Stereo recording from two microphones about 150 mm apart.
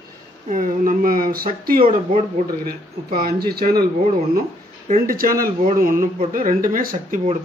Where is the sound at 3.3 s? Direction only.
90° right.